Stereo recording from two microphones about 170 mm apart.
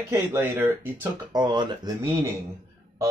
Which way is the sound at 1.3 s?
25° right (ahead or behind).